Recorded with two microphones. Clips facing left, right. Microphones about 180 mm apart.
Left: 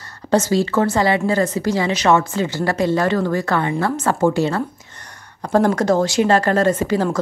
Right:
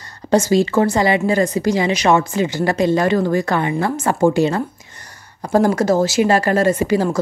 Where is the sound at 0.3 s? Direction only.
15° right (ahead or behind).